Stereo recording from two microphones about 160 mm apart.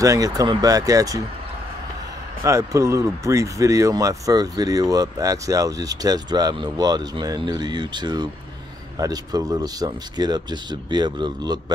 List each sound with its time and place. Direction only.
0.0 s speech: 20° right (ahead or behind)
2.4 s speech: 20° right (ahead or behind)